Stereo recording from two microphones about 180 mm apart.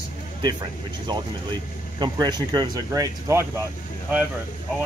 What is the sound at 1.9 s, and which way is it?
Speech, 25° right (ahead or behind).